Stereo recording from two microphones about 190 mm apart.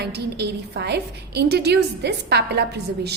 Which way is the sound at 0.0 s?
60° right (ahead or behind).